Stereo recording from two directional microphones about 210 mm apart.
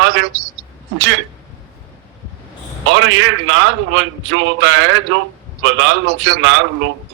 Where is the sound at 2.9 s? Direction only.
65° right (ahead or behind).